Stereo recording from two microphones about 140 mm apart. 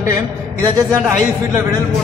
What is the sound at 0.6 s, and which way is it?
Speech, 20° right (ahead or behind).